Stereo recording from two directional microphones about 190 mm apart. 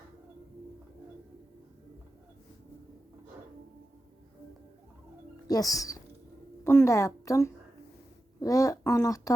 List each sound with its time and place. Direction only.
5.5 s a woman's voice: 20° left (ahead or behind)